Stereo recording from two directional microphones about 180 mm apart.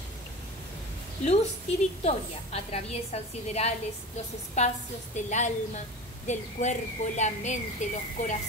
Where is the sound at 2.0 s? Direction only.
35° left (ahead or behind).